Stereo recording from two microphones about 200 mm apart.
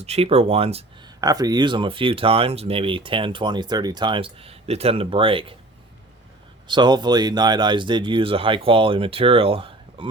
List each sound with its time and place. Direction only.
0.0 s speech: 30° right (ahead or behind)
1.2 s speech: 20° right (ahead or behind)
6.7 s speech: 20° right (ahead or behind)